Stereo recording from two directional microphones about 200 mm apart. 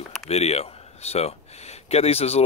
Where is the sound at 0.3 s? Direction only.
30° left (ahead or behind).